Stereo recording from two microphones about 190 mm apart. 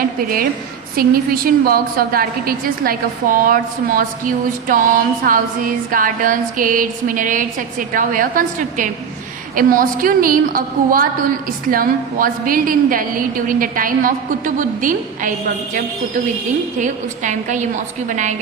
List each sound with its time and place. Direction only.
0.2 s a woman's voice: 50° right (ahead or behind)
16.8 s a woman's voice: 40° right (ahead or behind)